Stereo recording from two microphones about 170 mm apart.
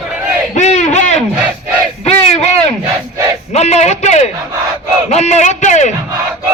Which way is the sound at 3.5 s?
40° left (ahead or behind).